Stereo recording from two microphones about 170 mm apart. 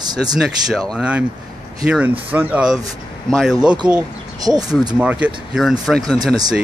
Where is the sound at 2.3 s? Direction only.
10° right (ahead or behind).